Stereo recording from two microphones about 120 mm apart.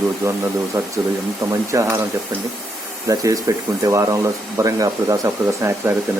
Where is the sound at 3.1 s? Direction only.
30° right (ahead or behind).